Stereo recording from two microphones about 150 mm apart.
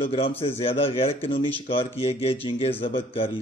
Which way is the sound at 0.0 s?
40° left (ahead or behind).